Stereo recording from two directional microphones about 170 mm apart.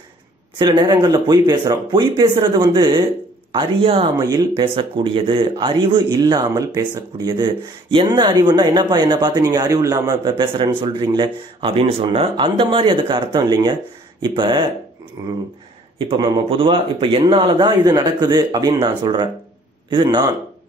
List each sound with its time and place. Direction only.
0.6 s speech: 25° right (ahead or behind)